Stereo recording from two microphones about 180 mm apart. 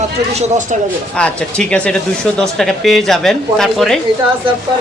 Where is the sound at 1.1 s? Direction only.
5° left (ahead or behind).